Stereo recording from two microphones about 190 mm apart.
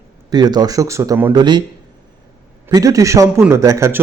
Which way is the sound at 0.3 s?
20° right (ahead or behind).